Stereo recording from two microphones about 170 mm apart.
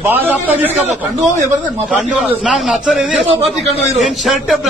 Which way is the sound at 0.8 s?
45° right (ahead or behind).